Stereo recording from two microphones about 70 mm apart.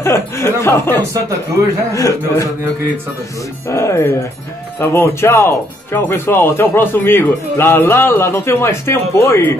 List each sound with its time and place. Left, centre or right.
0.0 s speech: left
2.0 s speech: left
3.7 s speech: left